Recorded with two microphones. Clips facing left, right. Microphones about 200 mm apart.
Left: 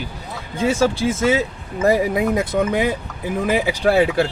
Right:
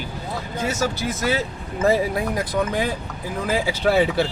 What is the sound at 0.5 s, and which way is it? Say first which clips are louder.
Speech: left 7 dB; 30° left (ahead or behind).